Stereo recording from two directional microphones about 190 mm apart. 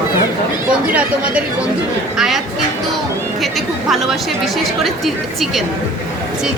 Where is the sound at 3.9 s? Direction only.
Centre (ahead or behind).